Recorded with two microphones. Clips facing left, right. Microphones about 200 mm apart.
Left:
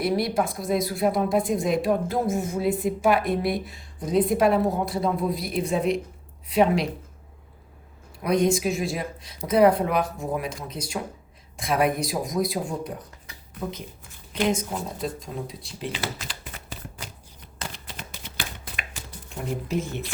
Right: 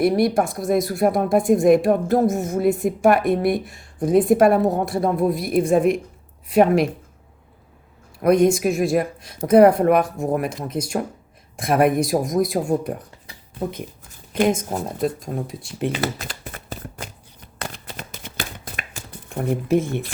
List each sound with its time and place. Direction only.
0.0 s a woman's voice: 50° right (ahead or behind)
8.2 s a woman's voice: 50° right (ahead or behind)
14.3 s a woman's voice: 50° right (ahead or behind)
16.1 s shuffling cards: 45° right (ahead or behind)